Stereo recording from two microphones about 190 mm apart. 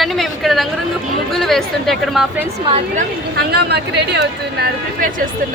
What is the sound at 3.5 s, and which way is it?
Speech, 60° right (ahead or behind).